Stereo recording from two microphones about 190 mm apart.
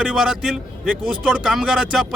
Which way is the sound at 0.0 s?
Centre (ahead or behind).